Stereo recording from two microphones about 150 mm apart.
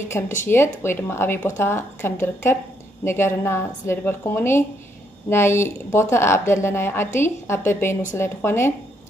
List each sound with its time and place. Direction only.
0.2 s a woman's voice: 15° left (ahead or behind)